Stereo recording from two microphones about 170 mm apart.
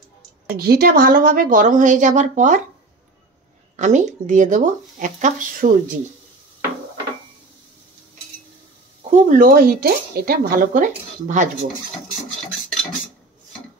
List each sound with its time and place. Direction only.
0.5 s speech: 65° right (ahead or behind); by 2.6 s 45° right (ahead or behind)
3.7 s speech: 45° right (ahead or behind)
9.1 s speech: 50° right (ahead or behind)